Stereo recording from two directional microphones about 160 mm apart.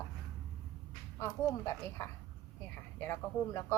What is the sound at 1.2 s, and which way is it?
A woman's voice, 15° left (ahead or behind).